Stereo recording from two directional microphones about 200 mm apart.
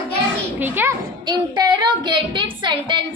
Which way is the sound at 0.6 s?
10° right (ahead or behind).